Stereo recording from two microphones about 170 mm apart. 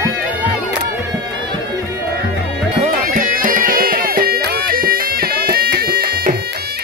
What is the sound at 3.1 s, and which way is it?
Music, 55° right (ahead or behind).